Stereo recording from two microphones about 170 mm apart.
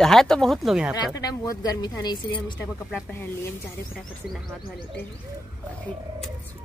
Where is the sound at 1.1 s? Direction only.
20° left (ahead or behind).